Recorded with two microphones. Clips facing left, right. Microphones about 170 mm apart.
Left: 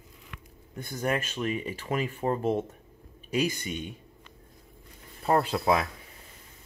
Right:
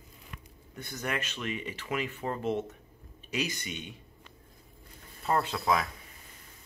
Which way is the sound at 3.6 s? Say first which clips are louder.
Left 5 dB; 45° left (ahead or behind).